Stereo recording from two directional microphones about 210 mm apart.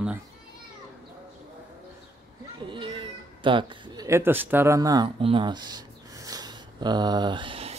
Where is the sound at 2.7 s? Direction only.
25° right (ahead or behind).